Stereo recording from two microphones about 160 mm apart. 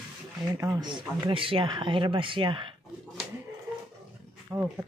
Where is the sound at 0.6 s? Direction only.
25° right (ahead or behind).